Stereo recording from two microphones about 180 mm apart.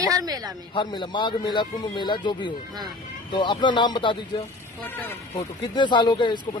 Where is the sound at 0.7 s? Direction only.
25° left (ahead or behind).